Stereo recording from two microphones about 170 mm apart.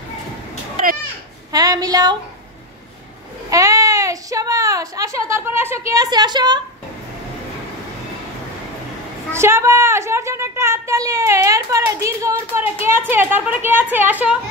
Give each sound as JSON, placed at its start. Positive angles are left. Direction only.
{"t": 1.5, "sound": "speech", "side_deg": -20}
{"t": 3.4, "sound": "a sound", "side_deg": -20}
{"t": 9.3, "sound": "a woman's voice", "side_deg": -15}